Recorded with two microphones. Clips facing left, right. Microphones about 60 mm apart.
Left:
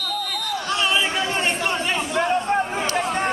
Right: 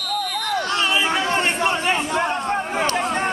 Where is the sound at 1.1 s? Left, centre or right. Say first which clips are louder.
Right 2 dB; right.